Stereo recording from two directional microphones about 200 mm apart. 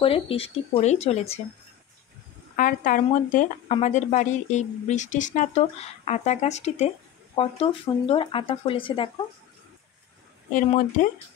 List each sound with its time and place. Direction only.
0.0 s speech: 30° left (ahead or behind)
2.5 s speech: 40° left (ahead or behind); by 9.2 s 25° left (ahead or behind)
10.5 s speech: 40° left (ahead or behind)